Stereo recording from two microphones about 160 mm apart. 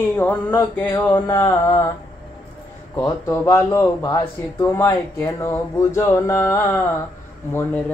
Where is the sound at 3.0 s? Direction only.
15° left (ahead or behind).